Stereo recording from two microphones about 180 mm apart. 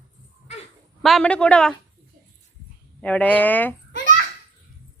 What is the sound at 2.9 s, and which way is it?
Speech, 5° left (ahead or behind).